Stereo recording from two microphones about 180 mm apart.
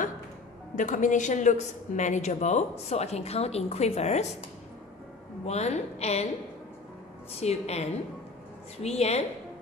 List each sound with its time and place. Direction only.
0.7 s a woman's voice: 45° left (ahead or behind)
7.3 s a woman's voice: 35° left (ahead or behind)